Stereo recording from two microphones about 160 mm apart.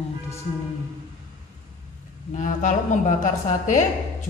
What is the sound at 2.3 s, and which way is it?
Speech, 50° left (ahead or behind).